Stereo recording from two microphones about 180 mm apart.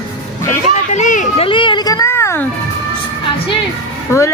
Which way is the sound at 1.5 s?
25° left (ahead or behind).